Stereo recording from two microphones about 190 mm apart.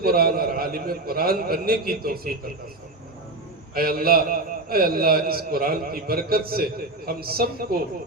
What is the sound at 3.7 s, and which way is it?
A man's voice, 50° right (ahead or behind).